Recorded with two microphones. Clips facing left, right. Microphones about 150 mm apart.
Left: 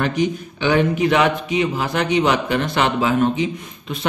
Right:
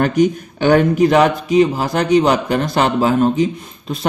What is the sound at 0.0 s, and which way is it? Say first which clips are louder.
A man's voice: right 6 dB; 45° right (ahead or behind).